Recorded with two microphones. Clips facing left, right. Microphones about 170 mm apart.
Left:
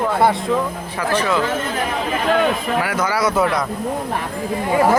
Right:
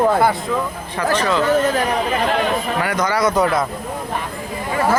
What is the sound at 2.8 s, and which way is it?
Speech, 5° left (ahead or behind).